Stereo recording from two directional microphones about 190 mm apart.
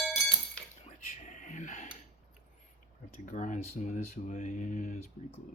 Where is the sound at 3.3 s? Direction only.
40° left (ahead or behind).